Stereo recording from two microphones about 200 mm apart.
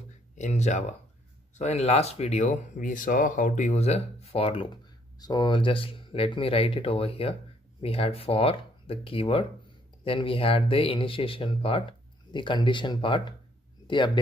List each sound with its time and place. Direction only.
0.4 s speech: 35° left (ahead or behind)